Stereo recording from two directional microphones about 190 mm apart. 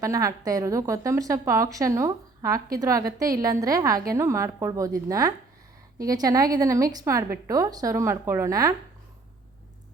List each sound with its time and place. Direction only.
0.0 s a woman's voice: 15° right (ahead or behind)